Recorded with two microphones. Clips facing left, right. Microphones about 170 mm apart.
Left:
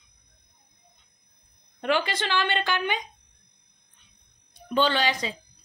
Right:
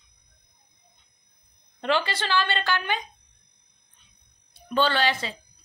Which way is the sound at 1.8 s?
10° left (ahead or behind).